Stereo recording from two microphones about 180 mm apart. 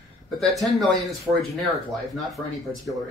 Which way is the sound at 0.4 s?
Centre (ahead or behind).